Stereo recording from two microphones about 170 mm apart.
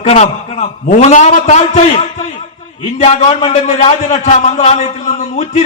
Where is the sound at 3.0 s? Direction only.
40° left (ahead or behind).